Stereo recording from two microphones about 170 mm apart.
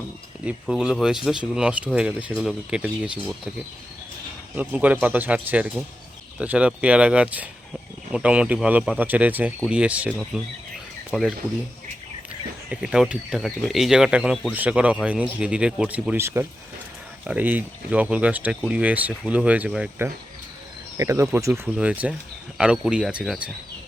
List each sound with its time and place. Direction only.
0.4 s speech: 5° right (ahead or behind)
4.5 s speech: 10° right (ahead or behind)
12.7 s speech: 5° right (ahead or behind)